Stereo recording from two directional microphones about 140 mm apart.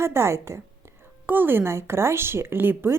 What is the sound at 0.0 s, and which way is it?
A woman's voice, 20° right (ahead or behind).